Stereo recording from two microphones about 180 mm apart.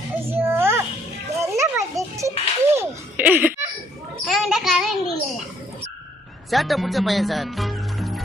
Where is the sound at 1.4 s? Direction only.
15° right (ahead or behind).